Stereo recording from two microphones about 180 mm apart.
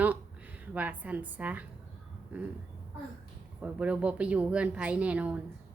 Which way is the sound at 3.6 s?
5° right (ahead or behind).